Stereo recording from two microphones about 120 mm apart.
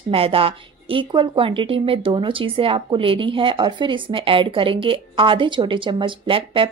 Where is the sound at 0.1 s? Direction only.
50° right (ahead or behind).